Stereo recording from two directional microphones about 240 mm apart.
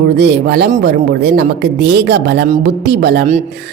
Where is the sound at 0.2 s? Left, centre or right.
Right.